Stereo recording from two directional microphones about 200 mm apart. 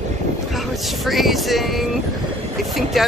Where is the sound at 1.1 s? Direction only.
Centre (ahead or behind).